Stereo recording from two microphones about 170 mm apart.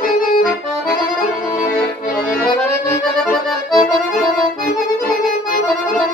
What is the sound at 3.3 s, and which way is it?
Accordion, centre (ahead or behind).